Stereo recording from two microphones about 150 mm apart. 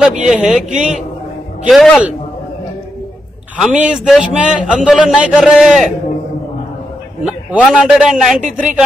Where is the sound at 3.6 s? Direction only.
5° right (ahead or behind).